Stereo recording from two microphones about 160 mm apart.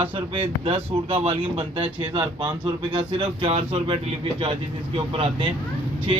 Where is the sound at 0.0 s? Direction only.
35° right (ahead or behind).